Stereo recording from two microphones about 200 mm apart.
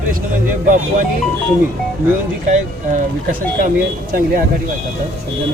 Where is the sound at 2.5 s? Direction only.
40° right (ahead or behind).